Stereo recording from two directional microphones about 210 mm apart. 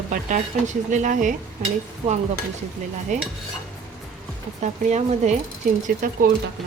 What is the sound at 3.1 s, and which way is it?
Speech, 35° right (ahead or behind).